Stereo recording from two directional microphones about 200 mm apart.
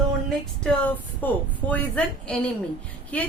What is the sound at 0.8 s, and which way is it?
A woman's voice, 10° left (ahead or behind).